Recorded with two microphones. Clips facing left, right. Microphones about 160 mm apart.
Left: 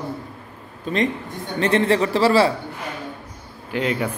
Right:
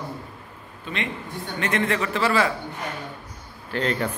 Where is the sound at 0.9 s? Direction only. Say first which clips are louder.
Left 8 dB; 40° left (ahead or behind).